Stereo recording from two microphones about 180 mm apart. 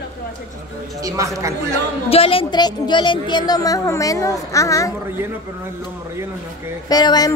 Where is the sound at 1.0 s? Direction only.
15° right (ahead or behind).